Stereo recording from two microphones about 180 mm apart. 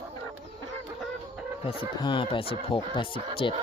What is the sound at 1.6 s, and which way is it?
Speech, 30° left (ahead or behind).